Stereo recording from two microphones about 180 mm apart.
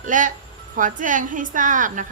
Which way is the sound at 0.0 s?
45° right (ahead or behind).